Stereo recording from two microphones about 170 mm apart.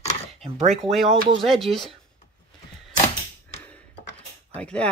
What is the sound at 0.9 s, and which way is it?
Speech, centre (ahead or behind).